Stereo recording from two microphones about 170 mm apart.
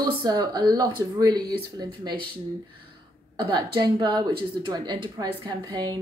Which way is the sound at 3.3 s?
25° right (ahead or behind).